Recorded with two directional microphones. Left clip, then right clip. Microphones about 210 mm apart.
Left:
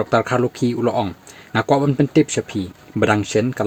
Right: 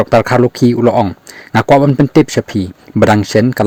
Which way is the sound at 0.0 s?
40° right (ahead or behind).